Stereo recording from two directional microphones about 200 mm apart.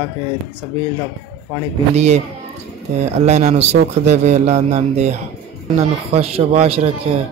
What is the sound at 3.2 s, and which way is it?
A man's voice, 35° right (ahead or behind).